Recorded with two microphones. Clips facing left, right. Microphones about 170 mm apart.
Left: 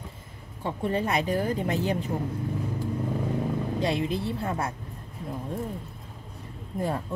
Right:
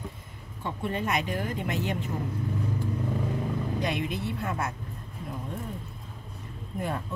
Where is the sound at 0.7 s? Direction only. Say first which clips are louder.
Left 3 dB; 35° left (ahead or behind).